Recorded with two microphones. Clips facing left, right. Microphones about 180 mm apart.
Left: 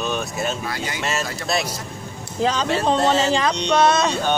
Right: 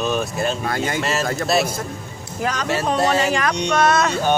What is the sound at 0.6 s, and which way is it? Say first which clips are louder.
Speech: right 6 dB; 50° right (ahead or behind).